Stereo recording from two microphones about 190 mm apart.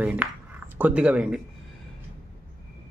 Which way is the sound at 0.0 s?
5° right (ahead or behind).